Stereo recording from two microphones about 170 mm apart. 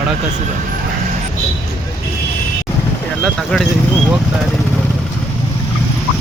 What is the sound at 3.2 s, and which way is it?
Speech, 5° left (ahead or behind).